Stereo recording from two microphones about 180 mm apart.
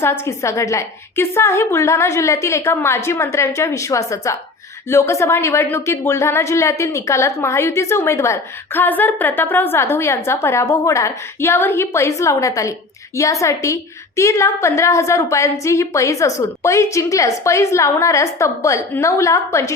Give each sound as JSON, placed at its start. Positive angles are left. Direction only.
{"t": 0.0, "sound": "a woman's voice", "side_deg": 15}